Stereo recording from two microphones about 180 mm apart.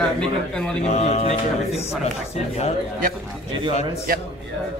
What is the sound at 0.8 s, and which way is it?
Speech, 40° left (ahead or behind).